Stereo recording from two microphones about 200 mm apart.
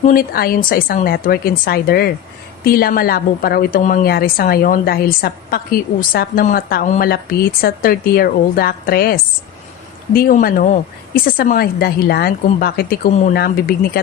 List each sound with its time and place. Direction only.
0.0 s a woman's voice: 45° left (ahead or behind)